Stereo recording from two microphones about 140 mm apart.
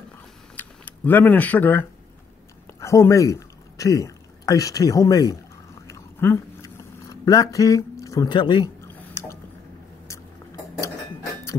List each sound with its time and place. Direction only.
0.6 s speech: 15° left (ahead or behind)
5.9 s a sound: 20° left (ahead or behind)
8.4 s speech: 35° left (ahead or behind)
8.8 s drip: 20° left (ahead or behind)